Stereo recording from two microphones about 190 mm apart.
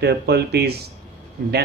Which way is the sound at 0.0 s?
60° right (ahead or behind).